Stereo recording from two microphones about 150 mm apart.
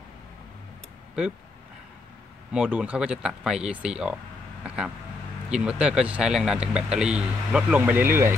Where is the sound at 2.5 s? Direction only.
5° right (ahead or behind).